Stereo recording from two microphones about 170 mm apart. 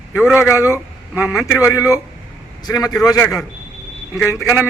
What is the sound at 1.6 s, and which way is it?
A man's voice, 20° left (ahead or behind).